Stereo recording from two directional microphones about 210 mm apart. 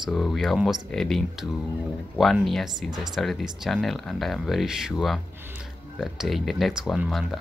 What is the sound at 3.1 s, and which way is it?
Speech, centre (ahead or behind).